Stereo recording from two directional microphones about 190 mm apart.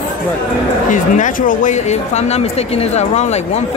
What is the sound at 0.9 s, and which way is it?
Speech, 40° left (ahead or behind).